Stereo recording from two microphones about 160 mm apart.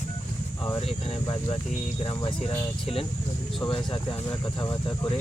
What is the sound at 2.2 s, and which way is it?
Speech, 40° left (ahead or behind).